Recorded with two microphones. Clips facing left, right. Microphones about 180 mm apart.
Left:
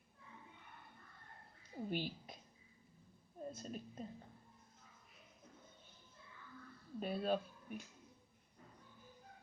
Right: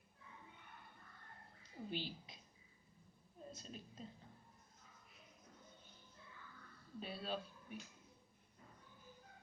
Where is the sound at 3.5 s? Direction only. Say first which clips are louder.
Left 6 dB; 50° left (ahead or behind).